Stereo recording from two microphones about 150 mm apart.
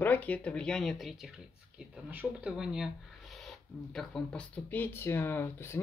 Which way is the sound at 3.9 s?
5° left (ahead or behind).